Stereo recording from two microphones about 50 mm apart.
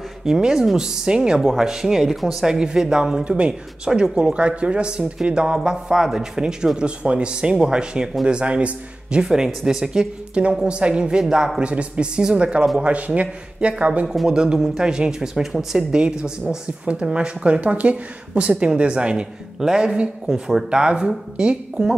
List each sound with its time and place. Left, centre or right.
0.2 s speech: centre
8.3 s speech: right
9.2 s speech: centre
11.6 s speech: right